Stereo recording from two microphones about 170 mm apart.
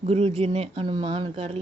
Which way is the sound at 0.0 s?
35° right (ahead or behind).